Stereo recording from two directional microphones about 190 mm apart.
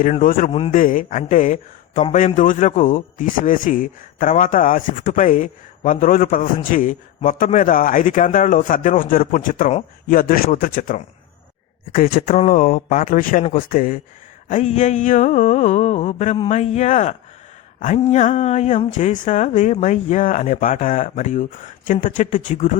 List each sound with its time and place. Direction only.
0.0 s a man's voice: 45° left (ahead or behind)